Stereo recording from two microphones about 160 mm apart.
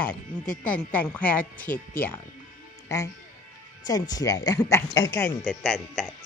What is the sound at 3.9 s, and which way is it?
Speech, 25° left (ahead or behind).